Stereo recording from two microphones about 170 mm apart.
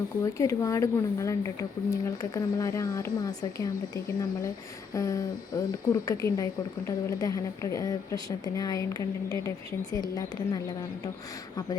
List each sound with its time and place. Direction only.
0.3 s speech: 20° left (ahead or behind)